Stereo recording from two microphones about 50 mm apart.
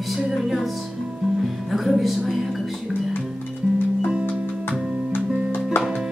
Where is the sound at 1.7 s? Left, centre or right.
Centre.